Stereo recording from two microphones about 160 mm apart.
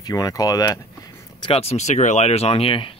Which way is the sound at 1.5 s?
45° left (ahead or behind).